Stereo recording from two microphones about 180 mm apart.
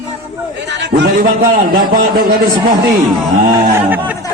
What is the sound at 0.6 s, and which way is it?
A man's voice, 70° right (ahead or behind).